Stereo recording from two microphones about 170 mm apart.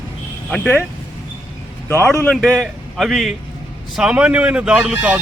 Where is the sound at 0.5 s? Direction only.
5° left (ahead or behind).